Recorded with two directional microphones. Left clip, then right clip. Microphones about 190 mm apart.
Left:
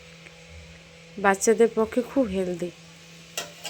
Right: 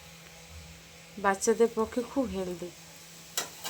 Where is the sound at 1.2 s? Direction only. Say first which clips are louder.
Left 6 dB; 20° left (ahead or behind).